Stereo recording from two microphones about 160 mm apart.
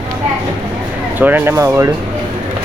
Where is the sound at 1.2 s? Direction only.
10° right (ahead or behind).